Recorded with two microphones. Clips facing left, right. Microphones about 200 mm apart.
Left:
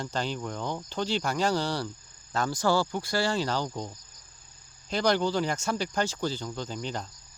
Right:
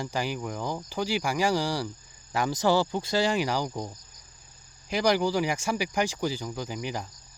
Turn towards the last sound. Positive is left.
turn(degrees=-10)  # may be behind; listen again after turning